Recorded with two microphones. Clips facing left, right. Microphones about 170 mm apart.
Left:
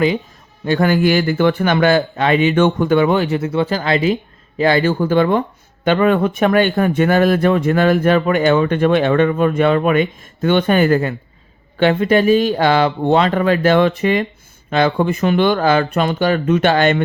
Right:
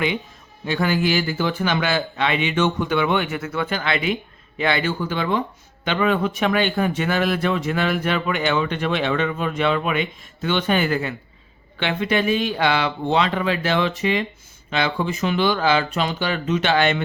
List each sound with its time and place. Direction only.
0.6 s speech: 50° left (ahead or behind)